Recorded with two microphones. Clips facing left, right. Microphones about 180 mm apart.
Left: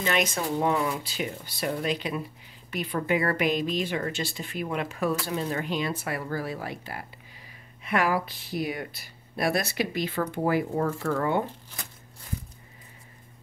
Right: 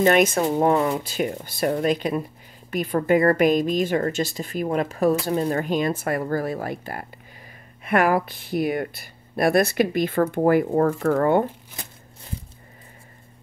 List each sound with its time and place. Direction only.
0.0 s speech: 50° right (ahead or behind)